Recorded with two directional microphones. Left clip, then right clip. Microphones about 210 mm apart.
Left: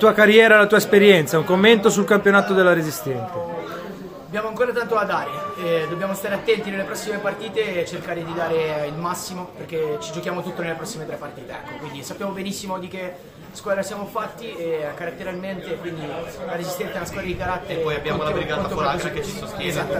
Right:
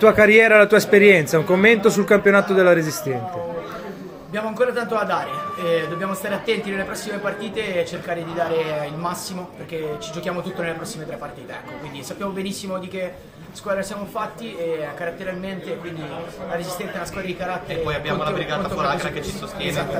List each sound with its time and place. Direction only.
0.0 s a man's voice: centre (ahead or behind)
4.3 s a man's voice: centre (ahead or behind)
10.2 s a man's voice: centre (ahead or behind)
12.2 s a man's voice: centre (ahead or behind)
13.7 s a man's voice: centre (ahead or behind)
16.5 s a man's voice: centre (ahead or behind)